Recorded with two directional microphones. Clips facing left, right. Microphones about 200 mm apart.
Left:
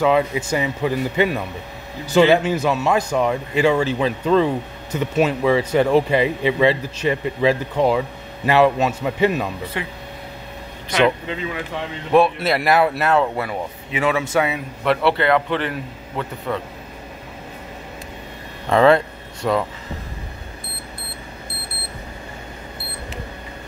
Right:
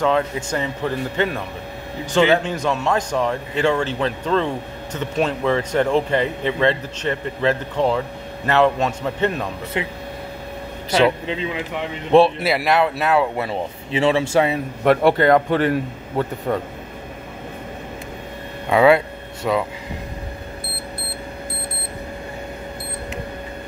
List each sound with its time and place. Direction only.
0.0 s speech: 10° left (ahead or behind)
9.8 s speech: 20° right (ahead or behind)
11.2 s speech: 20° right (ahead or behind)
12.4 s speech: centre (ahead or behind)
13.4 s speech: 25° right (ahead or behind)
14.8 s a man's voice: 45° right (ahead or behind)
18.7 s a sound: 10° right (ahead or behind)